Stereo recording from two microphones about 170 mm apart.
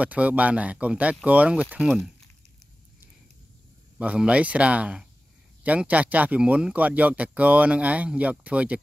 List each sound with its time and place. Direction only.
0.0 s speech: 10° right (ahead or behind)
4.0 s speech: 5° right (ahead or behind)